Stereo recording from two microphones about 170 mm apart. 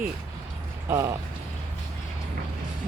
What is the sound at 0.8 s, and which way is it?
Speech, 15° right (ahead or behind).